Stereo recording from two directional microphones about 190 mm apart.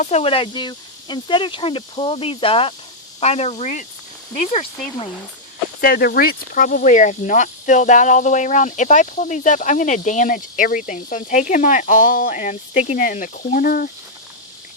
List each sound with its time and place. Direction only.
0.0 s speech: 35° left (ahead or behind)
5.8 s speech: 50° left (ahead or behind)